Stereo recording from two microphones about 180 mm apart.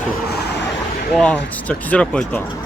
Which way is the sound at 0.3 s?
60° left (ahead or behind).